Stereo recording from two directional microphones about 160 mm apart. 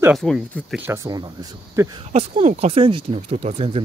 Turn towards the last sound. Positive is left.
turn(degrees=-40)  # may be behind; listen again after turning